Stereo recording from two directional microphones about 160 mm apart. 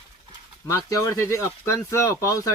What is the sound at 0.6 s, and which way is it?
Speech, 20° left (ahead or behind).